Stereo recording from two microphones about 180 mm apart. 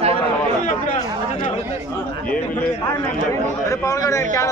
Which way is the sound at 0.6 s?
45° left (ahead or behind).